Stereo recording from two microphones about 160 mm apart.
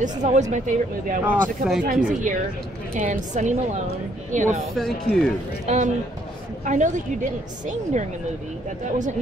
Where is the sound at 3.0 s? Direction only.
50° right (ahead or behind).